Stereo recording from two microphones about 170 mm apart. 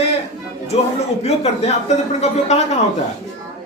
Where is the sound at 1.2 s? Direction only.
40° left (ahead or behind).